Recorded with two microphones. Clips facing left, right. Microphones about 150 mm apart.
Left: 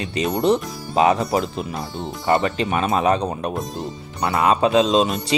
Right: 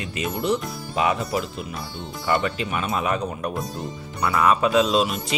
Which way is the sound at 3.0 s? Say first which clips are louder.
Left 6 dB; 35° left (ahead or behind).